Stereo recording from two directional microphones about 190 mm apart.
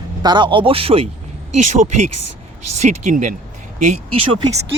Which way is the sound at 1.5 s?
40° right (ahead or behind).